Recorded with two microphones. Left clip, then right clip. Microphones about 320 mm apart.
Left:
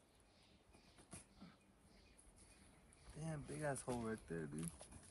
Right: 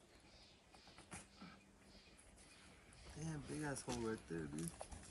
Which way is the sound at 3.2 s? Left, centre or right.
Left.